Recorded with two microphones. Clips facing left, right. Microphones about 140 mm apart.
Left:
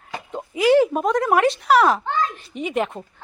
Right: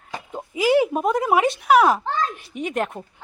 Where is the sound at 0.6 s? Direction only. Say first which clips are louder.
Left 2 dB; 5° right (ahead or behind).